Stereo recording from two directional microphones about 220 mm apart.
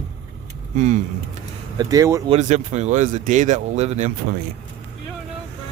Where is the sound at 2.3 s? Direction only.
30° right (ahead or behind).